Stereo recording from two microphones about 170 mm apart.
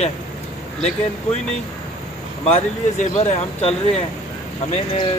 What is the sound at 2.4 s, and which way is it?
Speech, 40° left (ahead or behind).